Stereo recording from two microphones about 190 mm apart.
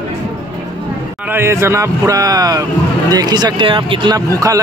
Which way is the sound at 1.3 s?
15° right (ahead or behind).